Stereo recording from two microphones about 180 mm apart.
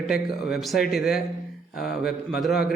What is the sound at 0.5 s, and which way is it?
A man's voice, centre (ahead or behind).